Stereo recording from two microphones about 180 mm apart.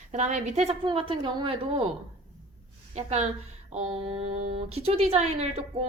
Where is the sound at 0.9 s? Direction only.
25° right (ahead or behind).